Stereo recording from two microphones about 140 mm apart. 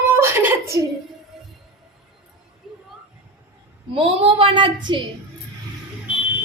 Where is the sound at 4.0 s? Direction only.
40° right (ahead or behind).